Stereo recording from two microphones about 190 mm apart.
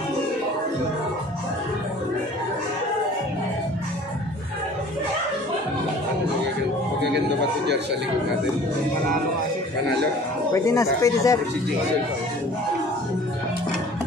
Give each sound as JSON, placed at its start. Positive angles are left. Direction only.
{"t": 10.5, "sound": "speech", "side_deg": 15}